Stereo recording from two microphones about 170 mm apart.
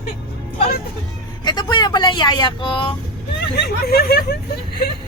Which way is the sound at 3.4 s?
65° left (ahead or behind).